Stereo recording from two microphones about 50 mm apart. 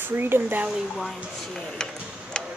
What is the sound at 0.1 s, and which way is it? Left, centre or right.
Speech, right.